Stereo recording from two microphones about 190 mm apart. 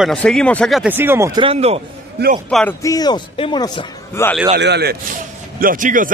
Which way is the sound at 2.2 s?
60° right (ahead or behind).